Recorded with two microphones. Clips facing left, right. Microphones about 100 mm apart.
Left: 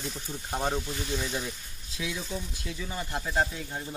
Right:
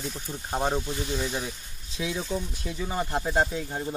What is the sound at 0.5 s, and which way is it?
Speech, 20° right (ahead or behind).